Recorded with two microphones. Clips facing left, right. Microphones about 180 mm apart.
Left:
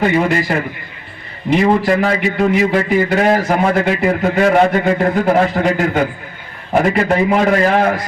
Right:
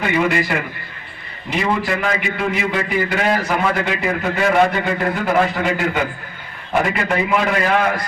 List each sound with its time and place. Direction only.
0.0 s a man's voice: 35° left (ahead or behind)
1.6 s a man's voice: 40° left (ahead or behind)